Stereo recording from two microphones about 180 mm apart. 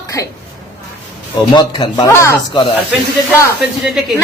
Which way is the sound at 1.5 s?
25° left (ahead or behind).